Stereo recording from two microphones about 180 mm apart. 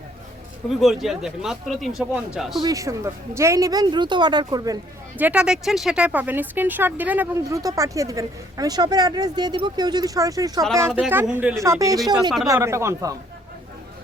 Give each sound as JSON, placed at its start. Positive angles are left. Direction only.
{"t": 0.8, "sound": "speech", "side_deg": 0}
{"t": 2.6, "sound": "a woman's voice", "side_deg": -20}
{"t": 5.1, "sound": "speech", "side_deg": -10}
{"t": 11.6, "sound": "a woman's voice", "side_deg": -15}